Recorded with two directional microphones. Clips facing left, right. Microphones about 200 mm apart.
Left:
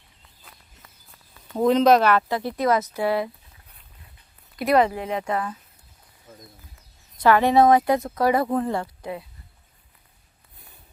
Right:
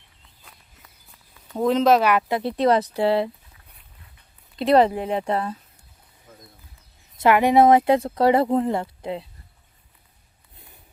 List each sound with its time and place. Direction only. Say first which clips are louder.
1.5 s speech: left 1 dB; centre (ahead or behind); by 3.2 s 30° right (ahead or behind)
4.5 s speech: right 3 dB; 30° right (ahead or behind)
7.2 s speech: right 1 dB; 20° right (ahead or behind)